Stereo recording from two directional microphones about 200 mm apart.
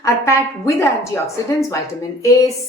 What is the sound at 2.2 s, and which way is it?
Speech, 15° left (ahead or behind).